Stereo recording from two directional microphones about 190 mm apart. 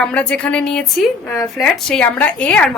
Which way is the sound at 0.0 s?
5° left (ahead or behind).